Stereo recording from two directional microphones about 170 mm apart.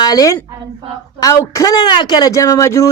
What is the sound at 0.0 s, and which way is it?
A woman's voice, 20° left (ahead or behind).